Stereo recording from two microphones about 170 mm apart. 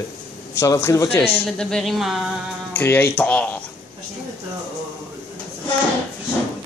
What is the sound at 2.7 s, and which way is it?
Speech, 15° left (ahead or behind).